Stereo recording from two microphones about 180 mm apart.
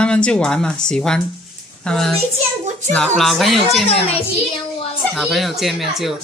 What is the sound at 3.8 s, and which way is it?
Speech, 35° left (ahead or behind).